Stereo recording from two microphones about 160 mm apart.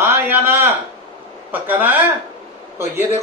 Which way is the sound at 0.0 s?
15° right (ahead or behind).